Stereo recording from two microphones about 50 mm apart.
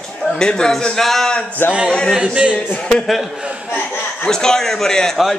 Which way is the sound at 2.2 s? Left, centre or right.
Centre.